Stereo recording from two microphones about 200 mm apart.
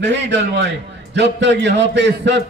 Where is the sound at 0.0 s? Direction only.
60° right (ahead or behind).